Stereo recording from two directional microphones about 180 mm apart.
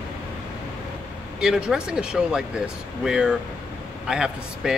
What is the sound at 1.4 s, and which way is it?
Speech, 5° right (ahead or behind).